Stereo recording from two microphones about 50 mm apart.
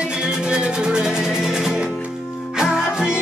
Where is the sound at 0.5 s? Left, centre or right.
Centre.